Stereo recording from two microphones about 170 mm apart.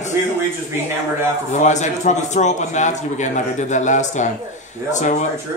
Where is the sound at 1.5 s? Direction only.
45° left (ahead or behind).